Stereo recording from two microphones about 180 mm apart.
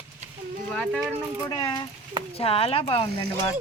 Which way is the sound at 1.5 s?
25° left (ahead or behind).